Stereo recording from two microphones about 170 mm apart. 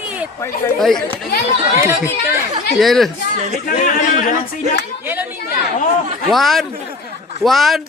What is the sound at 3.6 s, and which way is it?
Speech, 50° left (ahead or behind).